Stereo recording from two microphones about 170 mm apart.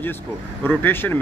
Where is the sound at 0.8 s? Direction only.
10° left (ahead or behind).